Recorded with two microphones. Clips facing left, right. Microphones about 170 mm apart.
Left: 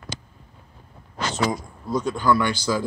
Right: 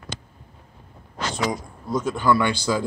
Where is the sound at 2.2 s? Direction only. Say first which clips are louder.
Right 1 dB; 20° right (ahead or behind).